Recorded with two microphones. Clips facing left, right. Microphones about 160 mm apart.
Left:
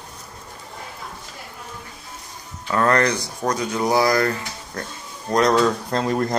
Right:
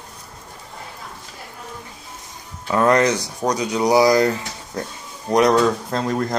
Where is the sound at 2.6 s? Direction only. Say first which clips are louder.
Right 3 dB; 15° right (ahead or behind).